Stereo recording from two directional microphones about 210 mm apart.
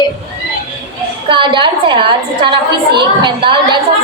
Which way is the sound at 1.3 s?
25° right (ahead or behind).